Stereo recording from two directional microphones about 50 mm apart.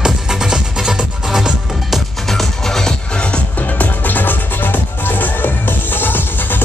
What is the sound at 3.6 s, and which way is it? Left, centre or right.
Music, left.